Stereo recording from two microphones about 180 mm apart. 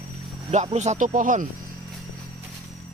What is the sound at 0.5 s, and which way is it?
Speech, 40° right (ahead or behind).